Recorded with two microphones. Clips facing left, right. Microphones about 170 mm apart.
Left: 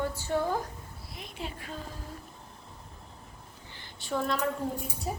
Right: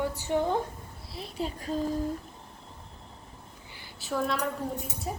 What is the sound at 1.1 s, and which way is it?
Speech, 35° right (ahead or behind).